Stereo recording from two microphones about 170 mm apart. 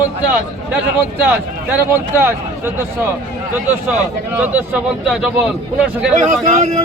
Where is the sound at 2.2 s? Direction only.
15° right (ahead or behind).